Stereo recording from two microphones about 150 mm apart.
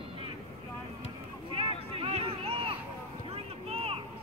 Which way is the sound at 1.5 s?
35° right (ahead or behind).